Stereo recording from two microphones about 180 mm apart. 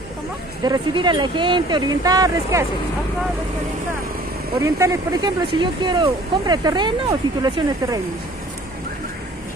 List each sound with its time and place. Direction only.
0.7 s speech: 25° right (ahead or behind)
4.6 s speech: 15° right (ahead or behind)